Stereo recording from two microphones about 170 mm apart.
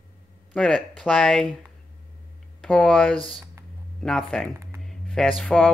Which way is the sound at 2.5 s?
5° left (ahead or behind).